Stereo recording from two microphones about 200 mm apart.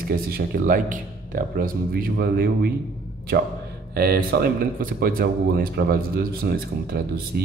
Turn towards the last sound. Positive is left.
turn(degrees=-50)  # may be behind; listen again after turning